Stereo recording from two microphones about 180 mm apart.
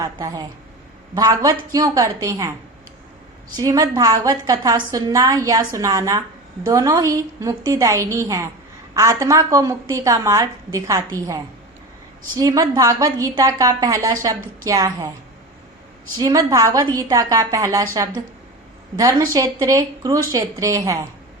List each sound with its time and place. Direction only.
0.0 s a woman's voice: 25° right (ahead or behind)
3.6 s a woman's voice: 20° right (ahead or behind)
12.4 s a woman's voice: 20° right (ahead or behind)
16.2 s a woman's voice: 20° right (ahead or behind)